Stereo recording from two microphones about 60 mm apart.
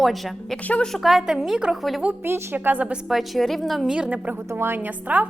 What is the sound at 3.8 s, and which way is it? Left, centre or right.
Speech, centre.